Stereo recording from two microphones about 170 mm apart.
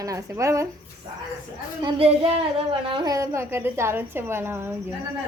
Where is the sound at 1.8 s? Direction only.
30° right (ahead or behind); by 4.7 s 15° right (ahead or behind).